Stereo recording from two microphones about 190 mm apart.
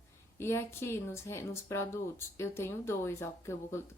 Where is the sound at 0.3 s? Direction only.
15° left (ahead or behind).